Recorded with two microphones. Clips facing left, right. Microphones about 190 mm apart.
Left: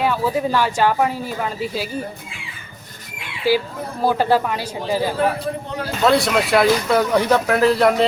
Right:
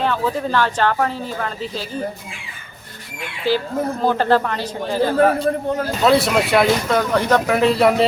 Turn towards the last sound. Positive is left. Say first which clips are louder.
# even
turn(degrees=0)  # may be behind; listen again after turning